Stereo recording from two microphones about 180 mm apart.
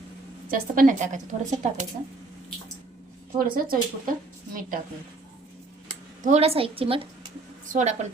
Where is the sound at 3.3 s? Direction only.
55° right (ahead or behind).